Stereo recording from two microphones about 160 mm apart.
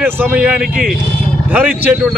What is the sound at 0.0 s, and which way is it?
A man's voice, 10° right (ahead or behind).